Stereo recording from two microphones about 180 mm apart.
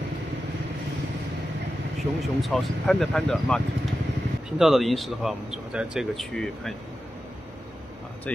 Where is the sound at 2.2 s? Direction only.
Centre (ahead or behind).